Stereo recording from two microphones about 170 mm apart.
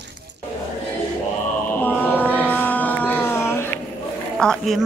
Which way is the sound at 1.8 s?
10° left (ahead or behind).